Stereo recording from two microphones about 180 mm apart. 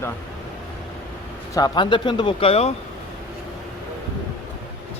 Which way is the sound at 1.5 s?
25° left (ahead or behind).